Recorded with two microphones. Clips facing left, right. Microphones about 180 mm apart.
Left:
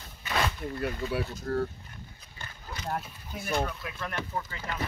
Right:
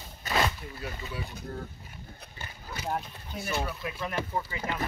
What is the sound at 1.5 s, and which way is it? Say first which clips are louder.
Speech: left 11 dB; 70° left (ahead or behind).